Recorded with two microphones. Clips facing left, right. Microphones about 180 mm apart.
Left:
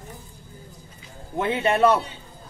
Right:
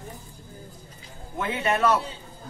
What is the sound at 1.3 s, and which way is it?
Speech, 30° left (ahead or behind).